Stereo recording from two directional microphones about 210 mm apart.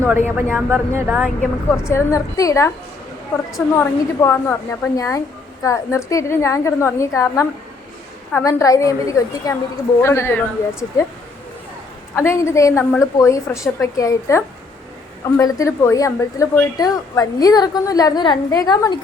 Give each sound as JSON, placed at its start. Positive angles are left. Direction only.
{"t": 0.0, "sound": "speech", "side_deg": -10}
{"t": 1.4, "sound": "a woman's voice", "side_deg": 10}
{"t": 3.8, "sound": "a woman's voice", "side_deg": 10}
{"t": 12.1, "sound": "a woman's voice", "side_deg": 10}